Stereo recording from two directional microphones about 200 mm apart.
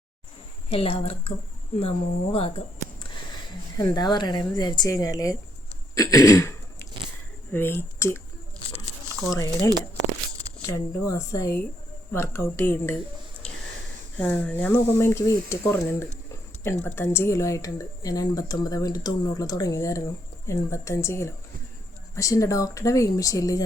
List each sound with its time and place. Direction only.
0.7 s speech: 30° left (ahead or behind)
3.8 s speech: 20° left (ahead or behind)
5.9 s throat clearing: 15° left (ahead or behind)
7.5 s speech: 10° left (ahead or behind)
9.3 s speech: 15° left (ahead or behind)
14.2 s speech: 10° left (ahead or behind)